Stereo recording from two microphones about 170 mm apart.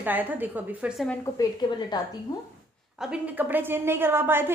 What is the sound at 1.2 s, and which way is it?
Speech, 25° left (ahead or behind).